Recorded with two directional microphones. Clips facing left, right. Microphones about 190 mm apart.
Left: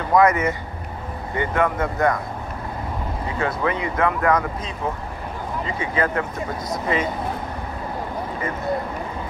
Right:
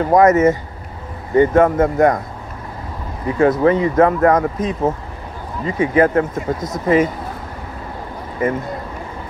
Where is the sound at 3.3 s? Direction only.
45° right (ahead or behind).